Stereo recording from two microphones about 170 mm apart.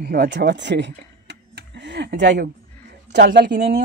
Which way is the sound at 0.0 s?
65° right (ahead or behind).